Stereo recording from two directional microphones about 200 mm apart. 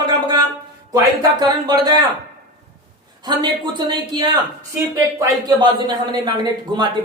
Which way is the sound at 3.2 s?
20° right (ahead or behind).